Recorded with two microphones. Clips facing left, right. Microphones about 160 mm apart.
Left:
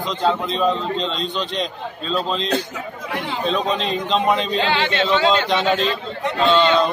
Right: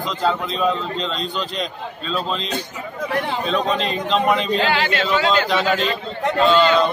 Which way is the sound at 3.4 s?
Centre (ahead or behind).